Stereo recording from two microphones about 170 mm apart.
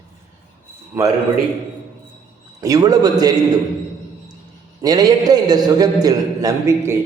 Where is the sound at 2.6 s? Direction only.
20° right (ahead or behind).